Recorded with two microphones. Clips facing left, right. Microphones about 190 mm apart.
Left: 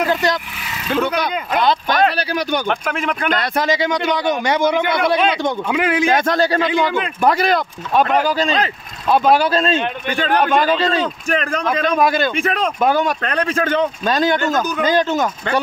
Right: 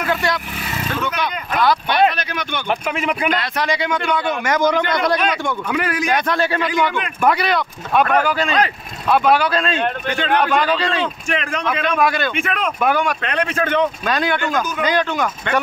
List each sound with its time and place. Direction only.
0.0 s speech: 40° left (ahead or behind)
2.9 s speech: 5° right (ahead or behind)
3.3 s speech: 40° left (ahead or behind)
4.8 s speech: 5° left (ahead or behind)
5.7 s speech: 20° left (ahead or behind)
6.1 s speech: 40° left (ahead or behind)
8.0 s speech: 30° left (ahead or behind)